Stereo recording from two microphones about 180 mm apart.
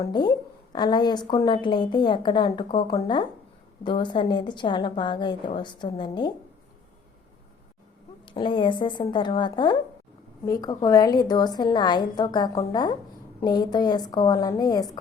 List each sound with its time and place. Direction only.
0.0 s a woman's voice: 25° left (ahead or behind)
8.2 s a woman's voice: 25° left (ahead or behind)